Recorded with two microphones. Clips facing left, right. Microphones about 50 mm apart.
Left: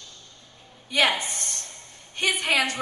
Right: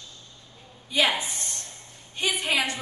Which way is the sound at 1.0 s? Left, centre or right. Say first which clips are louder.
Left 1 dB; left.